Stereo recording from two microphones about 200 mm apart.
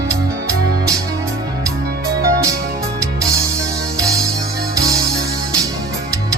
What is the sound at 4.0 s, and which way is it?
Music, 15° right (ahead or behind).